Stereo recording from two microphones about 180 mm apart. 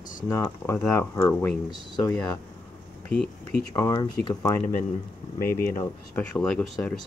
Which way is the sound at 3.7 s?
20° left (ahead or behind).